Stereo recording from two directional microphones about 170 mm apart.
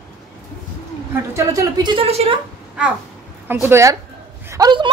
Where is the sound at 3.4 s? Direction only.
15° right (ahead or behind).